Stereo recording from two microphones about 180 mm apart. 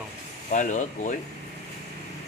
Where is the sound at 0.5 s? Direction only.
45° left (ahead or behind).